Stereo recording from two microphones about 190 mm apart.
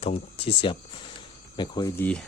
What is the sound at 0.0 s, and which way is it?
Speech, 30° left (ahead or behind).